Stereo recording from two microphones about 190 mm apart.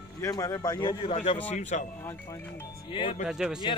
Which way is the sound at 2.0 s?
15° left (ahead or behind).